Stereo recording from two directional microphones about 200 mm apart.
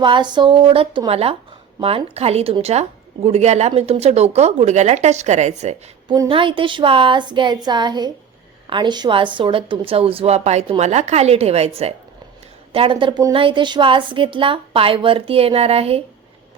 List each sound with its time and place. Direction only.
0.0 s a woman's voice: 25° right (ahead or behind)
6.1 s a woman's voice: 25° right (ahead or behind)